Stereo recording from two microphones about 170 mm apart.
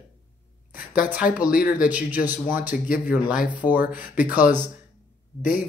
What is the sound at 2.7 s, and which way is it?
Speech, 55° left (ahead or behind).